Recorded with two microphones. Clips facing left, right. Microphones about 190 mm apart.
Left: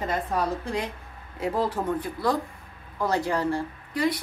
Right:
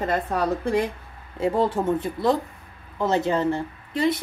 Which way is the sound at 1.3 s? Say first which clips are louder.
Right 4 dB; 25° right (ahead or behind).